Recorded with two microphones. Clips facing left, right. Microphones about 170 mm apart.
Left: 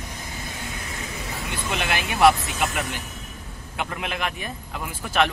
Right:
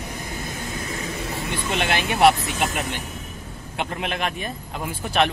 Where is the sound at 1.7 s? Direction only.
30° right (ahead or behind).